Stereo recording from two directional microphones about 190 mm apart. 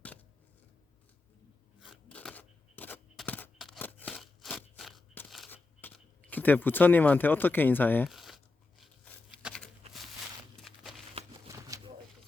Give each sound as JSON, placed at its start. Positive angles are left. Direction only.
{"t": 1.8, "sound": "a sound", "side_deg": 0}
{"t": 5.5, "sound": "speech", "side_deg": 10}
{"t": 8.1, "sound": "crumpling", "side_deg": 0}
{"t": 8.8, "sound": "a sound", "side_deg": 10}
{"t": 10.6, "sound": "walk", "side_deg": 0}
{"t": 11.4, "sound": "shuffling cards", "side_deg": -20}